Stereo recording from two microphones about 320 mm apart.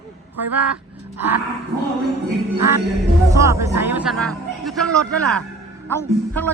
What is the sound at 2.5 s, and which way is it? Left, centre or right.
Music, right.